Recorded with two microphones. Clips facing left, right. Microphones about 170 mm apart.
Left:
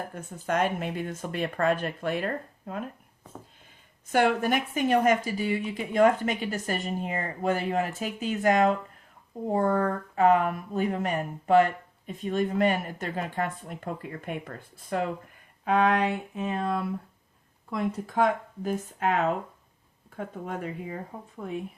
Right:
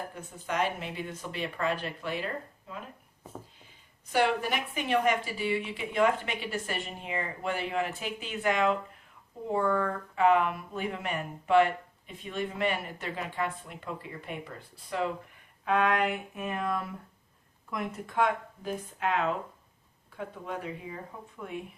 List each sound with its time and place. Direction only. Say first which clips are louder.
0.1 s speech: left 6 dB; 45° left (ahead or behind)
4.1 s speech: left 4 dB; 50° left (ahead or behind)
16.0 s a sound: left 3 dB; 25° left (ahead or behind)
18.1 s speech: left 2 dB; 40° left (ahead or behind)